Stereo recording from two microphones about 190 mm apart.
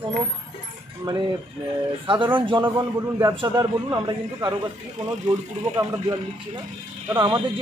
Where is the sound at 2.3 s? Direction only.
25° right (ahead or behind).